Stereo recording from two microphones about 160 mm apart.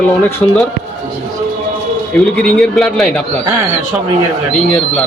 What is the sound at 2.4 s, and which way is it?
Speech, 5° left (ahead or behind).